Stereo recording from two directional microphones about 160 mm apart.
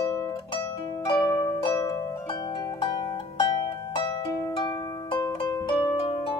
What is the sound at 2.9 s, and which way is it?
Harp, 30° left (ahead or behind).